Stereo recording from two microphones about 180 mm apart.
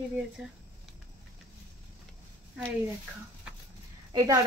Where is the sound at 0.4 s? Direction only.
5° right (ahead or behind).